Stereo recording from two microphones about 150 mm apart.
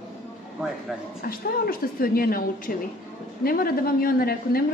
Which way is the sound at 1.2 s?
75° left (ahead or behind).